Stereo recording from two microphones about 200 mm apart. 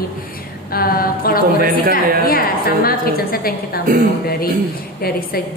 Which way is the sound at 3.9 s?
45° right (ahead or behind).